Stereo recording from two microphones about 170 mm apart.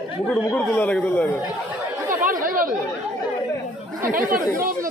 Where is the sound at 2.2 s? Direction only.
50° right (ahead or behind).